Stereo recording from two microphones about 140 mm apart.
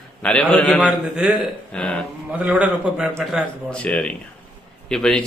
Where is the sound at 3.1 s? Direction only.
5° left (ahead or behind).